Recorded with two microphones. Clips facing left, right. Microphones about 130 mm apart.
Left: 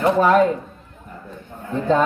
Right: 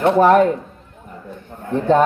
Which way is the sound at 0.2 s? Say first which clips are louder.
Right 4 dB; 55° right (ahead or behind).